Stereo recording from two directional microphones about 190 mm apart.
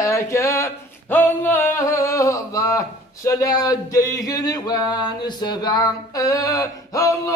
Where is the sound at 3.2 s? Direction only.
20° left (ahead or behind).